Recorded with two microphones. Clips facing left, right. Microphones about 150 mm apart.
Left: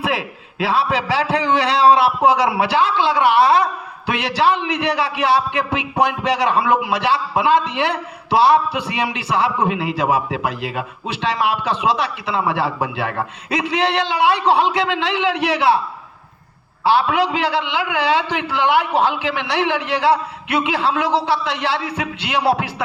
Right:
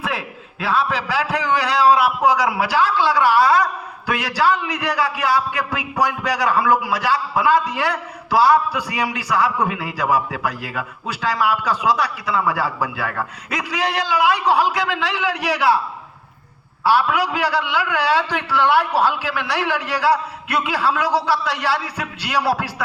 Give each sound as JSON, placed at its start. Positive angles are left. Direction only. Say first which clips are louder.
{"t": 0.0, "sound": "a man's voice", "louder": "left 4 dB", "side_deg": 30}
{"t": 16.8, "sound": "a man's voice", "louder": "left 1 dB", "side_deg": 25}